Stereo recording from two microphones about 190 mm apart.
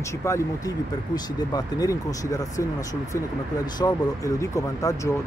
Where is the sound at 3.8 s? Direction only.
20° left (ahead or behind).